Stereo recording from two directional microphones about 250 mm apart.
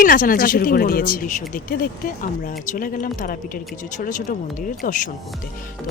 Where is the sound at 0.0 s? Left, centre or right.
Left.